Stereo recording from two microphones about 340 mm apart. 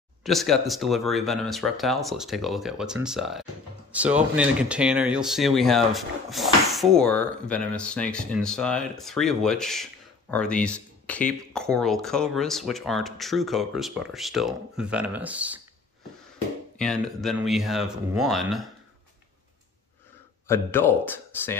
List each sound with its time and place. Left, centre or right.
0.2 s speech: centre
16.7 s speech: centre
20.4 s speech: centre